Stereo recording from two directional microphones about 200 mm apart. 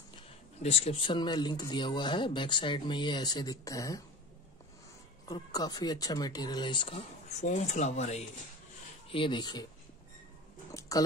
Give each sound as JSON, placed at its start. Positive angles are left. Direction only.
{"t": 0.1, "sound": "speech", "side_deg": 30}
{"t": 5.3, "sound": "speech", "side_deg": 20}
{"t": 10.7, "sound": "a sound", "side_deg": 15}